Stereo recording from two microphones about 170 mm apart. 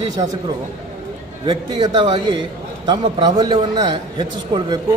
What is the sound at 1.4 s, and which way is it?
A man's voice, 25° right (ahead or behind).